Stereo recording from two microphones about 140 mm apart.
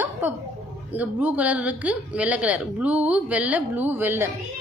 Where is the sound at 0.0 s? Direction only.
15° right (ahead or behind).